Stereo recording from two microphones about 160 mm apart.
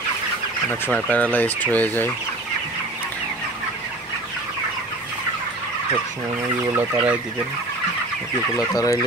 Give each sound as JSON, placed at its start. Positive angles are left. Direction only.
{"t": 0.7, "sound": "speech", "side_deg": 10}
{"t": 6.8, "sound": "chicken", "side_deg": -10}
{"t": 8.5, "sound": "speech", "side_deg": 20}